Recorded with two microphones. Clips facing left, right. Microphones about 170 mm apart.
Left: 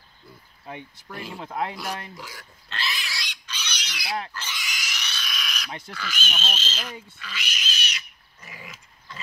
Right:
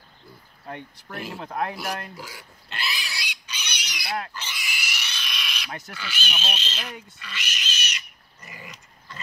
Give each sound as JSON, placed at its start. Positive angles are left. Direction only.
{"t": 1.0, "sound": "speech", "side_deg": -5}
{"t": 1.4, "sound": "speech", "side_deg": 10}
{"t": 1.8, "sound": "pig", "side_deg": -10}
{"t": 5.9, "sound": "speech", "side_deg": -5}
{"t": 7.2, "sound": "pig", "side_deg": 0}